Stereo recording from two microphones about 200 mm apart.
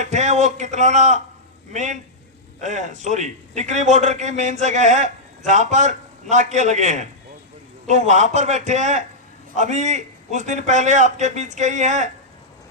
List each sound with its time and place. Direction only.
0.0 s a man's voice: 35° right (ahead or behind)